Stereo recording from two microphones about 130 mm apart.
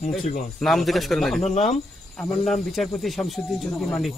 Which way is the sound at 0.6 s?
Centre (ahead or behind).